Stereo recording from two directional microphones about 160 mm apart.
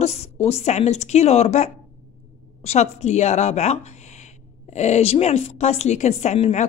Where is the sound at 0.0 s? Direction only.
40° left (ahead or behind).